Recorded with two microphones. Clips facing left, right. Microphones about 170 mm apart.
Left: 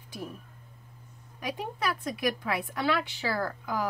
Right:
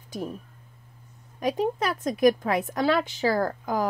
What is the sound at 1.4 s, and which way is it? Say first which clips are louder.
A woman's voice: right 7 dB; 45° right (ahead or behind).